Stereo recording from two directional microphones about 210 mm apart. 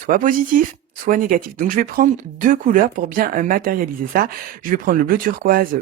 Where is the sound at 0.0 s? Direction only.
40° right (ahead or behind).